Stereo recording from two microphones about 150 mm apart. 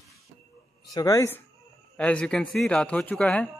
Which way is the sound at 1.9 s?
5° left (ahead or behind).